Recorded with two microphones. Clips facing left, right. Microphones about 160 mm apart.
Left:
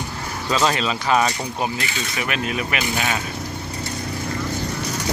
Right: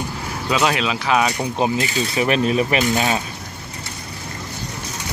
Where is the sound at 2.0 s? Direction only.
30° right (ahead or behind).